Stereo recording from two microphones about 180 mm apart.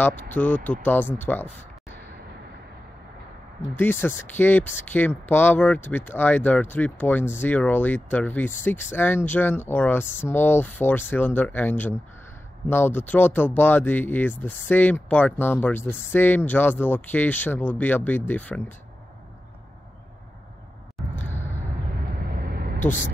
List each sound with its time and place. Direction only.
0.3 s speech: 10° left (ahead or behind)
3.6 s speech: 10° left (ahead or behind)
21.3 s a sound: 40° left (ahead or behind)